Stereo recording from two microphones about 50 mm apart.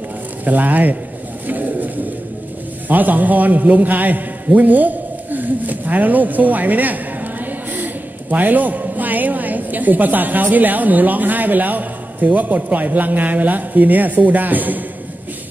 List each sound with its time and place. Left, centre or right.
0.5 s a man's voice: right
1.5 s bird: right
2.9 s a man's voice: right